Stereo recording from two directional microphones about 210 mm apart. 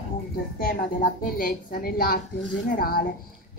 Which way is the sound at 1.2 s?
40° left (ahead or behind).